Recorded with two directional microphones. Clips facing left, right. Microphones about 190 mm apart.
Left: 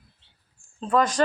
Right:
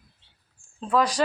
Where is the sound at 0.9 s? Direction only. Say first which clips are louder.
Left 1 dB; centre (ahead or behind).